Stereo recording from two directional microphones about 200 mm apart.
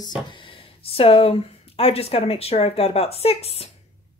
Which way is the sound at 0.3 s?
25° left (ahead or behind).